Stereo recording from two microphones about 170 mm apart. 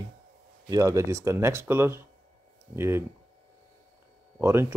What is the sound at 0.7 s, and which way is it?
Speech, 20° right (ahead or behind).